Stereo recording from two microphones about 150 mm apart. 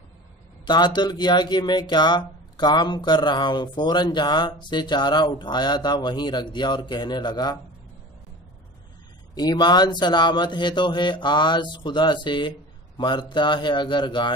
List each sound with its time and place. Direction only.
0.7 s speech: 30° left (ahead or behind)
9.3 s speech: 25° left (ahead or behind)